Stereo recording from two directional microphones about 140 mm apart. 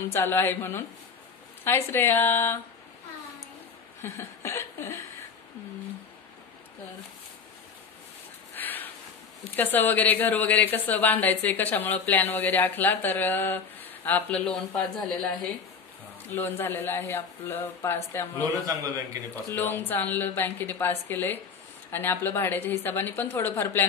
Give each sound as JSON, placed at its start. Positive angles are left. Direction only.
{"t": 0.1, "sound": "speech", "side_deg": 15}
{"t": 4.0, "sound": "a sound", "side_deg": 20}
{"t": 8.5, "sound": "a sound", "side_deg": 15}
{"t": 9.6, "sound": "speech", "side_deg": 15}
{"t": 18.4, "sound": "a man's voice", "side_deg": -25}
{"t": 19.3, "sound": "speech", "side_deg": 15}